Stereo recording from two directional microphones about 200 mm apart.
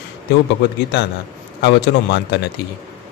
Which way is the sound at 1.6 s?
60° left (ahead or behind).